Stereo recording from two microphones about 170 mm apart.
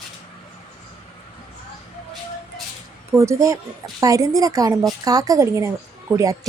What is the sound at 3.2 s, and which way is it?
A woman's voice, 20° right (ahead or behind).